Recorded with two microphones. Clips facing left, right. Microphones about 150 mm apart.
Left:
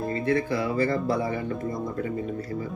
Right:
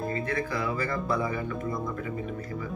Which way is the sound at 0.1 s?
30° left (ahead or behind).